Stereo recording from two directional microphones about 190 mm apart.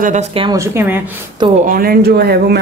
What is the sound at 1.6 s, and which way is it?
Speech, 50° right (ahead or behind).